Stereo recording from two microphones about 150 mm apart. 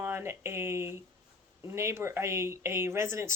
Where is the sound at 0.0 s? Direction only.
15° right (ahead or behind).